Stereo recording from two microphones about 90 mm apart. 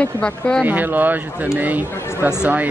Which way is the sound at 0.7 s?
20° right (ahead or behind).